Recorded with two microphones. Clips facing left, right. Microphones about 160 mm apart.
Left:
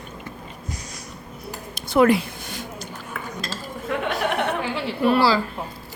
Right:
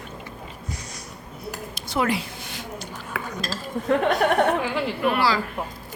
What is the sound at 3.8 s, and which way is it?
Speech, 40° right (ahead or behind).